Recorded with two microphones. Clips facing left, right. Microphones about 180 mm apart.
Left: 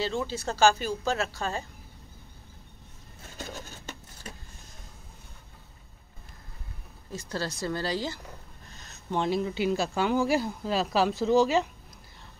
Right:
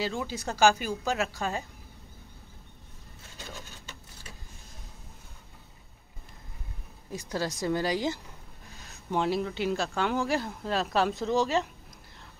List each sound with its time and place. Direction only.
0.0 s a woman's voice: 15° right (ahead or behind)
3.3 s a sound: 45° left (ahead or behind)
7.1 s a woman's voice: 15° right (ahead or behind); by 11.7 s centre (ahead or behind)